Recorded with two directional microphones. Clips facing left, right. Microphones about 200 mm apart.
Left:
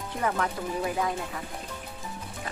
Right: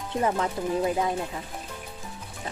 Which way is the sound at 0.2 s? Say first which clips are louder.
Right 3 dB; 25° right (ahead or behind).